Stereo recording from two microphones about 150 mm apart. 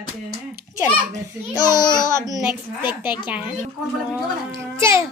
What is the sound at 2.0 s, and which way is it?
Speech, 20° right (ahead or behind).